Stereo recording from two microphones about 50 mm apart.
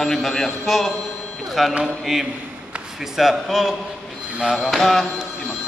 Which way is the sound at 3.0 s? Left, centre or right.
Centre.